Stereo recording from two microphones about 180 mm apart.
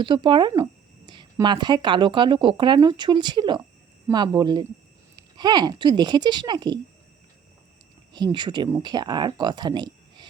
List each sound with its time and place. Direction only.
0.0 s speech: 25° right (ahead or behind)
8.1 s speech: 25° right (ahead or behind)